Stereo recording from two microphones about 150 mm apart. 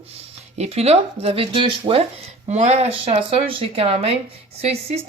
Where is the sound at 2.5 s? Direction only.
50° right (ahead or behind).